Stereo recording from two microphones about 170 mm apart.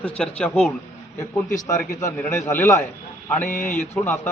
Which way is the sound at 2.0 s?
15° left (ahead or behind).